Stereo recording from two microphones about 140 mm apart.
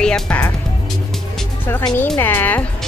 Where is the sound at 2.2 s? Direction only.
15° left (ahead or behind).